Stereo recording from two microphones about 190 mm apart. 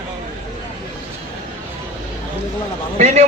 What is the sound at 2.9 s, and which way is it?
Speech, 35° right (ahead or behind).